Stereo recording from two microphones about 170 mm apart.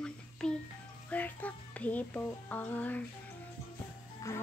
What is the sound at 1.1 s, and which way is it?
Music, 10° left (ahead or behind).